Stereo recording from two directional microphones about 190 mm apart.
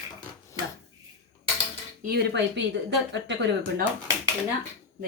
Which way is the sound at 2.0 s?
55° right (ahead or behind).